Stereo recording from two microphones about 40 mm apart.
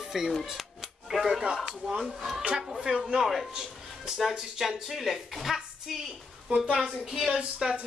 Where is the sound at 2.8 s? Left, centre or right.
Centre.